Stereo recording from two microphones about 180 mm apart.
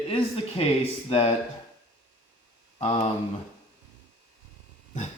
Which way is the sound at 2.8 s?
35° left (ahead or behind).